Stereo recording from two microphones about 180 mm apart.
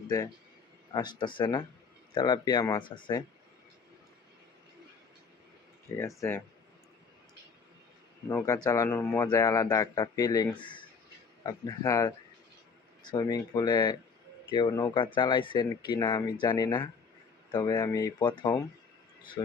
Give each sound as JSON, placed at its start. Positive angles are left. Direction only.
{"t": 1.2, "sound": "speech", "side_deg": 25}
{"t": 6.1, "sound": "speech", "side_deg": 15}
{"t": 8.3, "sound": "speech", "side_deg": 15}